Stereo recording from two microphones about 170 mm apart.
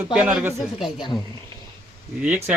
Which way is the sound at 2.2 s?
10° right (ahead or behind).